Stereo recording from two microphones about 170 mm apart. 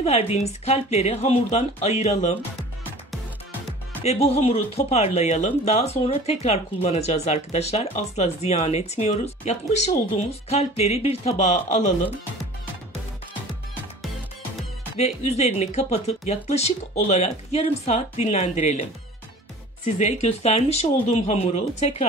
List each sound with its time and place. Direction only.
0.0 s speech: 40° left (ahead or behind)
4.0 s speech: 40° left (ahead or behind)
15.0 s speech: 40° left (ahead or behind)
20.0 s speech: 40° left (ahead or behind)